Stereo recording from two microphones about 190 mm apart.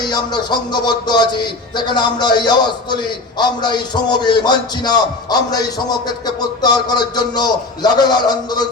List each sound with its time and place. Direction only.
0.7 s a man's voice: 20° left (ahead or behind)